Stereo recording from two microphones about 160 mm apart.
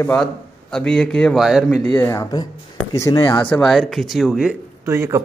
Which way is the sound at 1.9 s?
15° left (ahead or behind).